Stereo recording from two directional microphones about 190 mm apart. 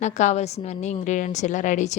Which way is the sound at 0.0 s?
40° left (ahead or behind).